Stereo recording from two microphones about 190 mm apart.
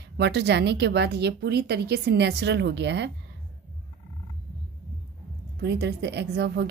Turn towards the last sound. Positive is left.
turn(degrees=-60)  # may be behind; listen again after turning